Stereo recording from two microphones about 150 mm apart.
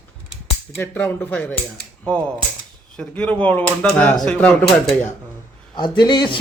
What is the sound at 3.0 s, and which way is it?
Speech, 5° left (ahead or behind).